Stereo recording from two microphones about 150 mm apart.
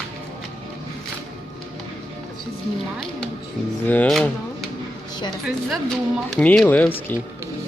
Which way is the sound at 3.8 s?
10° left (ahead or behind).